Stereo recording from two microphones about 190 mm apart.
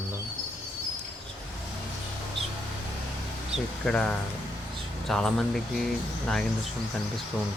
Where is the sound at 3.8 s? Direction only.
5° left (ahead or behind).